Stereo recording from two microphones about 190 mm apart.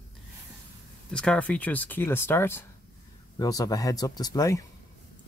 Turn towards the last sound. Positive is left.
turn(degrees=20)  # may be behind; listen again after turning